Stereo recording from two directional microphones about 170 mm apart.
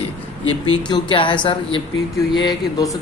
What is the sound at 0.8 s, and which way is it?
Speech, 25° left (ahead or behind).